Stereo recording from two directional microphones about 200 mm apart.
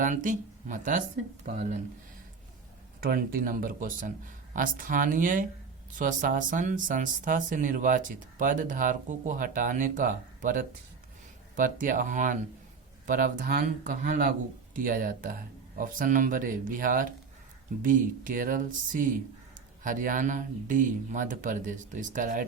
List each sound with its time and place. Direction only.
0.0 s speech: 40° right (ahead or behind)
3.0 s speech: 45° right (ahead or behind)